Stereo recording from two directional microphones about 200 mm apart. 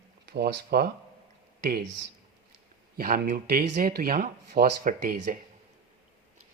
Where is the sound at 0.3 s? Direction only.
55° right (ahead or behind).